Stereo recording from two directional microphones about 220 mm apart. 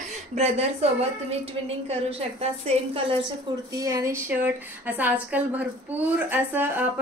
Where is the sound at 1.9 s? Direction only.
25° right (ahead or behind).